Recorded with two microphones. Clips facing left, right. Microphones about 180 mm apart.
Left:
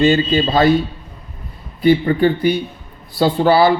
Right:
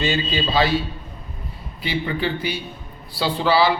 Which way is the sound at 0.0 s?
50° left (ahead or behind).